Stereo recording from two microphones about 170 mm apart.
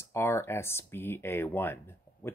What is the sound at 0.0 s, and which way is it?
Speech, 15° left (ahead or behind).